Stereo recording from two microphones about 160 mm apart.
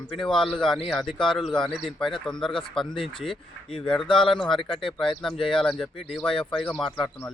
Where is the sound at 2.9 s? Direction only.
30° left (ahead or behind).